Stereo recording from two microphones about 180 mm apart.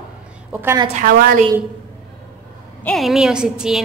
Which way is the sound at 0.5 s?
10° right (ahead or behind).